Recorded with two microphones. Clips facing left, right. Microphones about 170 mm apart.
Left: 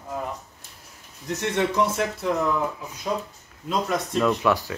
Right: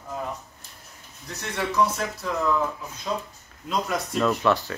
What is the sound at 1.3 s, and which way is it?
Speech, 20° left (ahead or behind).